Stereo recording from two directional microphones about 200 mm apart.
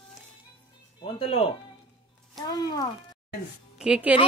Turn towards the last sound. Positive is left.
turn(degrees=-5)  # may be behind; listen again after turning